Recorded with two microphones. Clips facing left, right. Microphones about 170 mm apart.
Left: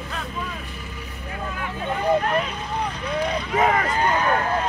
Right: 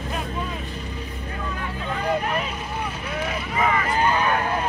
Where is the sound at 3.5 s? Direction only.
50° left (ahead or behind).